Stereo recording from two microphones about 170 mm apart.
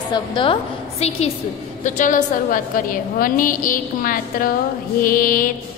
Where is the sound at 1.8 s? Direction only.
50° left (ahead or behind).